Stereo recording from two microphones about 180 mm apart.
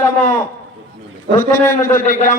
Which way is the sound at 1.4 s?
50° left (ahead or behind).